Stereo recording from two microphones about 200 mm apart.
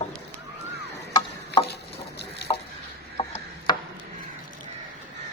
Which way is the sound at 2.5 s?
30° left (ahead or behind).